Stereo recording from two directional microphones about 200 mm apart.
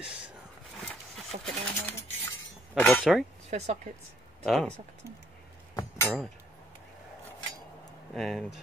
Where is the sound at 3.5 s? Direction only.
35° right (ahead or behind).